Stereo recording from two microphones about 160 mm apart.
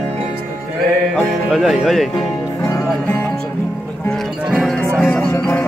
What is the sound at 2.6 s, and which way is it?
Music, 20° left (ahead or behind).